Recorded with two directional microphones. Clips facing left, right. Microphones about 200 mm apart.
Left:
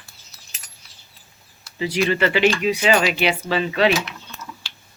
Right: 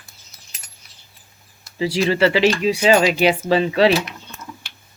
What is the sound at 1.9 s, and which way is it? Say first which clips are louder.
Speech: right 3 dB; 35° right (ahead or behind).